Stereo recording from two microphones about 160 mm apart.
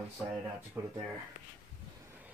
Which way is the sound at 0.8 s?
15° right (ahead or behind).